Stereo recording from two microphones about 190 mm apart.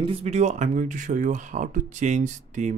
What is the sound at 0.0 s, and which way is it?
Speech, 30° right (ahead or behind).